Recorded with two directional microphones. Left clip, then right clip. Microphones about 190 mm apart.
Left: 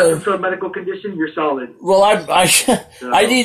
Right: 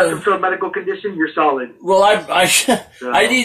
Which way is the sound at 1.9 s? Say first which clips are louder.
Even; 45° left (ahead or behind).